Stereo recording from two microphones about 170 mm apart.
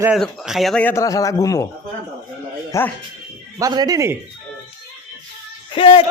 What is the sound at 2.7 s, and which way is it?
Speech, 20° left (ahead or behind).